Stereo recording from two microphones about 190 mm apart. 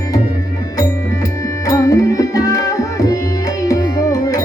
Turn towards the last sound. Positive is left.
turn(degrees=20)  # may be behind; listen again after turning